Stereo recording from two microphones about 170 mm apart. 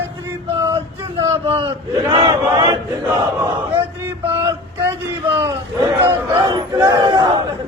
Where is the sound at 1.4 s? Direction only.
30° right (ahead or behind).